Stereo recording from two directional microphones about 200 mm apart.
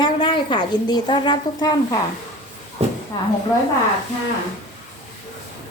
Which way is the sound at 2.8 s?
30° right (ahead or behind).